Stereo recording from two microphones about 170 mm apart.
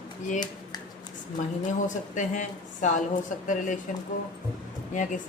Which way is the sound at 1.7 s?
45° left (ahead or behind).